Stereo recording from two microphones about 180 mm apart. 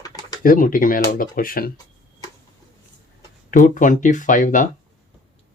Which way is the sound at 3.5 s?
45° left (ahead or behind).